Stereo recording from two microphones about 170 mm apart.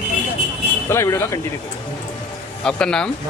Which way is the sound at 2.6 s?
5° left (ahead or behind).